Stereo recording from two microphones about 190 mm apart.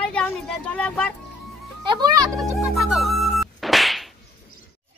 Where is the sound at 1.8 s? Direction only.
20° right (ahead or behind).